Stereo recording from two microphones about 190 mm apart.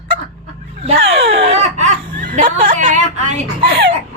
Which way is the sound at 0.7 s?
35° right (ahead or behind).